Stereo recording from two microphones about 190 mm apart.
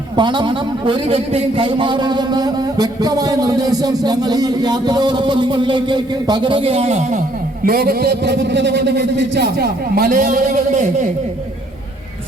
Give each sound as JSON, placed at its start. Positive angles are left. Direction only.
{"t": 0.2, "sound": "a man's voice", "side_deg": -25}
{"t": 7.6, "sound": "a man's voice", "side_deg": -50}